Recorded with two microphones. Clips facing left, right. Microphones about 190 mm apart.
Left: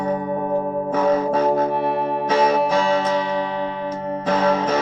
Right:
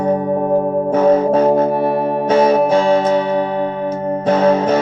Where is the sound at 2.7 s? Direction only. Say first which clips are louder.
Right 6 dB; 35° right (ahead or behind).